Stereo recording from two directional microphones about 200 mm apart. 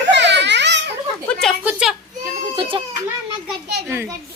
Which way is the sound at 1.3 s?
5° left (ahead or behind).